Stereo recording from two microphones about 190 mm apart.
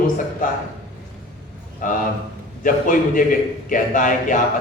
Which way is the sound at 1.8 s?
45° left (ahead or behind).